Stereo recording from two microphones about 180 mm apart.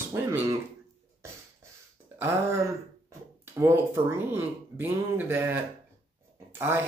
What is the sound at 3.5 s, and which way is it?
Speech, 15° right (ahead or behind).